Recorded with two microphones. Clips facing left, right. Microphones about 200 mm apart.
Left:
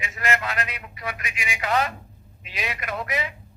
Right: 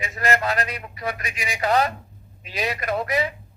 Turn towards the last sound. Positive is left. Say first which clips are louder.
# right 5 dB
turn(degrees=-35)  # may be behind; listen again after turning